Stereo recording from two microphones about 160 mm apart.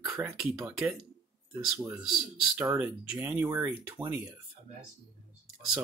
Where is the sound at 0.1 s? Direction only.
20° right (ahead or behind).